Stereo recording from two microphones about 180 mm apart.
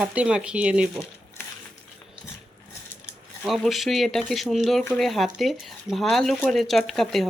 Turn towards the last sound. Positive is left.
turn(degrees=0)  # may be behind; listen again after turning